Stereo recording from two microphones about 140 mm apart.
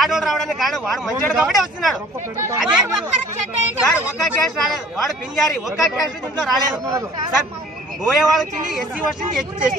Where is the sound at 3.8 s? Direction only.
Centre (ahead or behind).